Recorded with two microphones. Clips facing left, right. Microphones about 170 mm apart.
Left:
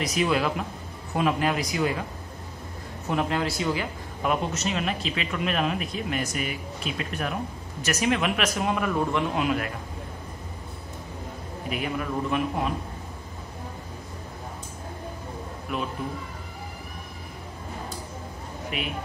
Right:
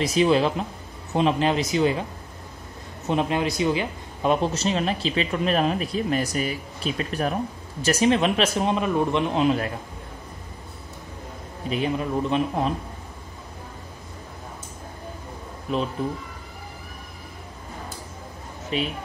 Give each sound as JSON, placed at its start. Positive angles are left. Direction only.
{"t": 0.0, "sound": "a man's voice", "side_deg": -30}
{"t": 3.1, "sound": "a man's voice", "side_deg": -20}
{"t": 11.7, "sound": "a man's voice", "side_deg": -25}
{"t": 16.0, "sound": "speech", "side_deg": -30}
{"t": 18.7, "sound": "a man's voice", "side_deg": -30}